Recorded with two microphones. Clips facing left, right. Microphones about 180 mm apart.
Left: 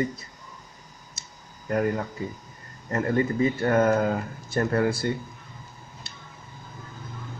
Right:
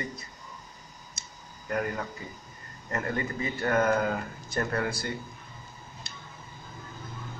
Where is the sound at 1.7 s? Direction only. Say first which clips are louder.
Left 6 dB; 30° left (ahead or behind).